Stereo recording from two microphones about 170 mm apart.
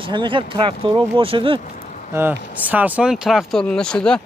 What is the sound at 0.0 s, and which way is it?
Speech, 30° right (ahead or behind).